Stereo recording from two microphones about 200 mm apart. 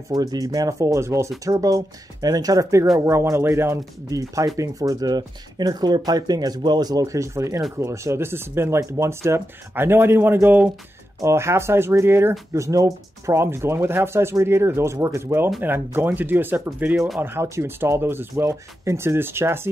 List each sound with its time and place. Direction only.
0.1 s speech: 20° right (ahead or behind)